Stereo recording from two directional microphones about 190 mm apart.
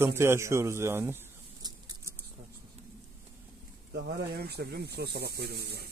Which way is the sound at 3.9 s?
55° right (ahead or behind).